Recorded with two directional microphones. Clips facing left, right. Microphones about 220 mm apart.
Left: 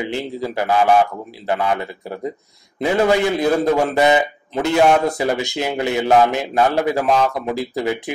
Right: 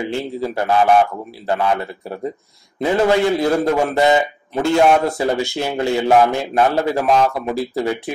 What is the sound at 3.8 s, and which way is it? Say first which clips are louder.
Speech: even; 20° right (ahead or behind).